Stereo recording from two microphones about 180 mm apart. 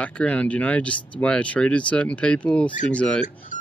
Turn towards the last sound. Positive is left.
turn(degrees=5)  # may be behind; listen again after turning